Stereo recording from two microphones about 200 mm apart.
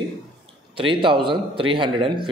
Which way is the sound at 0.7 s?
25° right (ahead or behind).